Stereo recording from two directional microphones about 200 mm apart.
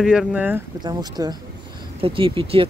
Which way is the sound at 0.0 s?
5° right (ahead or behind).